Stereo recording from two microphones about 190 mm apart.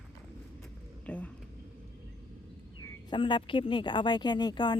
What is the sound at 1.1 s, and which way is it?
Speech, 5° left (ahead or behind).